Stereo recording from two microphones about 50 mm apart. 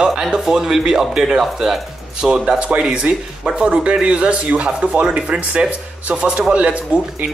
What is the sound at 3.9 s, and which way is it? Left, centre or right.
Speech, centre.